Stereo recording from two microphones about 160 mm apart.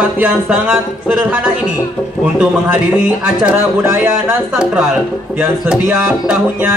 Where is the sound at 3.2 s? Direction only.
10° right (ahead or behind).